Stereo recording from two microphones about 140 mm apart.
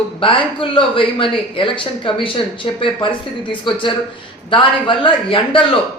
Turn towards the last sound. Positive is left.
turn(degrees=40)  # may be behind; listen again after turning